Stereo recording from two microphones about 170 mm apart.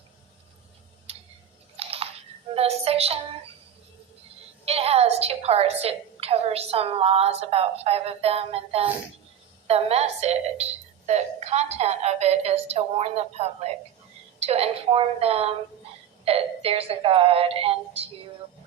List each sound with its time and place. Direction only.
1.7 s a sound: 35° right (ahead or behind)
2.6 s a woman's voice: 35° right (ahead or behind)
4.6 s a woman's voice: 35° right (ahead or behind)